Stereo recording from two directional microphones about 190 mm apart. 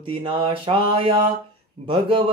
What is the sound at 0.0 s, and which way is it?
Speech, 30° right (ahead or behind).